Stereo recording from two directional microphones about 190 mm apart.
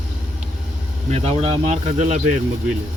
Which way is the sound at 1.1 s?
35° right (ahead or behind).